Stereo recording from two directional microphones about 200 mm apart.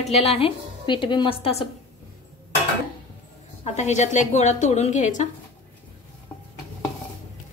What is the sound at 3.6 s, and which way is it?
A woman's voice, 35° left (ahead or behind).